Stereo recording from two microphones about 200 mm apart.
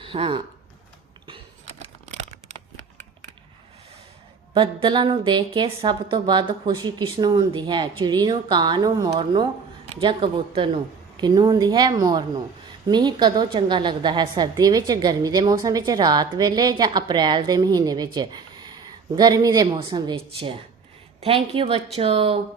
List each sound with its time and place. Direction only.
0.0 s speech: 25° right (ahead or behind)
4.5 s a woman's voice: 25° right (ahead or behind)